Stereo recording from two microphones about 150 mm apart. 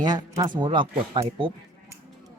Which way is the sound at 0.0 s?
25° right (ahead or behind).